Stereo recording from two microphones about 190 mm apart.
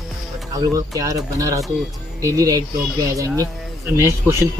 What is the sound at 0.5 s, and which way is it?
Speech, 20° right (ahead or behind).